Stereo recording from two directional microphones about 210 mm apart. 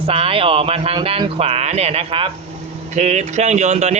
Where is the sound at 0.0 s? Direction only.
25° right (ahead or behind).